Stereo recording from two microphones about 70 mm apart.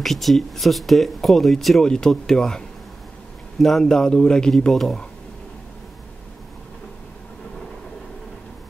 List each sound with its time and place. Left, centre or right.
0.0 s speech: centre